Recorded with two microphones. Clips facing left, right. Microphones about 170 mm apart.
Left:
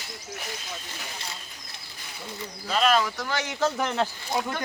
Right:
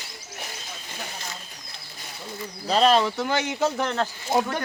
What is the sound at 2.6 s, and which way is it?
Speech, 35° right (ahead or behind).